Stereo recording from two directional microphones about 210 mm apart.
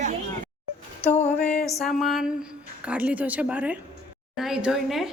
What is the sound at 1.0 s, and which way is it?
Music, 30° left (ahead or behind).